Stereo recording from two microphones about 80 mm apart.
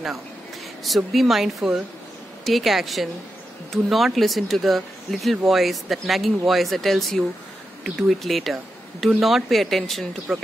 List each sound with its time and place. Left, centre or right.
0.8 s speech: centre